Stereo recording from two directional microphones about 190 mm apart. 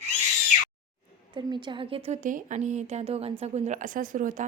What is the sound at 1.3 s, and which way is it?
A woman's voice, 25° right (ahead or behind).